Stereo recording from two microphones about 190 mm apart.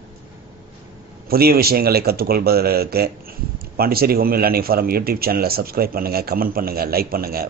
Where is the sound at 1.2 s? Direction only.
55° right (ahead or behind).